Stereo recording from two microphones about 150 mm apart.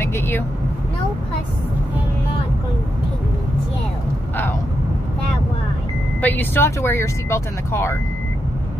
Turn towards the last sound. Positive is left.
turn(degrees=15)  # may be behind; listen again after turning